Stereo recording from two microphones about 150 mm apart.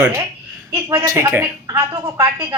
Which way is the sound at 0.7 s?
15° right (ahead or behind).